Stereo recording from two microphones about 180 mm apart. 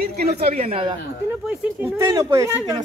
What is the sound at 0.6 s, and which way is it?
Speech, 30° right (ahead or behind).